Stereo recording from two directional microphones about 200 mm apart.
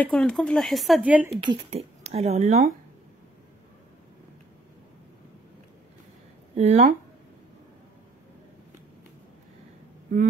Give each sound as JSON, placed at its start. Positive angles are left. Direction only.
{"t": 0.0, "sound": "speech", "side_deg": 5}
{"t": 1.5, "sound": "speech", "side_deg": -30}
{"t": 6.5, "sound": "speech", "side_deg": -35}